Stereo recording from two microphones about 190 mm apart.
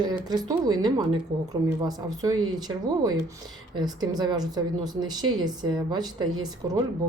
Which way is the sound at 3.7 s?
20° right (ahead or behind).